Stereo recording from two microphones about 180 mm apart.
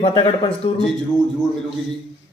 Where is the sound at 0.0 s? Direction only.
30° left (ahead or behind).